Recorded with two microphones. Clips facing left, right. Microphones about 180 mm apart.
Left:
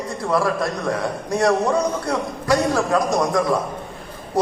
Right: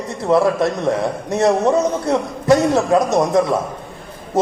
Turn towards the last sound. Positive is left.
turn(degrees=-25)  # may be behind; listen again after turning